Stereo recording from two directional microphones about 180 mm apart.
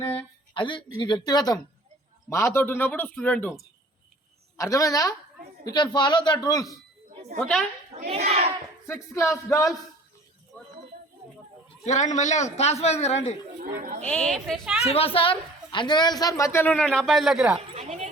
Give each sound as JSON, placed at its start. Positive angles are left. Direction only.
{"t": 0.5, "sound": "a woman's voice", "side_deg": 25}
{"t": 4.5, "sound": "a woman's voice", "side_deg": 15}
{"t": 7.3, "sound": "a woman's voice", "side_deg": 5}
{"t": 7.9, "sound": "a child's voice", "side_deg": -40}
{"t": 8.9, "sound": "a woman's voice", "side_deg": 15}
{"t": 11.9, "sound": "a man's voice", "side_deg": 40}
{"t": 13.6, "sound": "speech", "side_deg": -50}
{"t": 14.0, "sound": "a woman's voice", "side_deg": 5}
{"t": 14.8, "sound": "a woman's voice", "side_deg": 35}
{"t": 17.7, "sound": "speech", "side_deg": -35}